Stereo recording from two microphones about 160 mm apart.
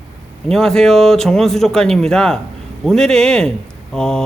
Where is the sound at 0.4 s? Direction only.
5° left (ahead or behind).